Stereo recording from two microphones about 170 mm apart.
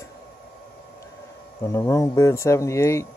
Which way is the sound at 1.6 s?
15° left (ahead or behind).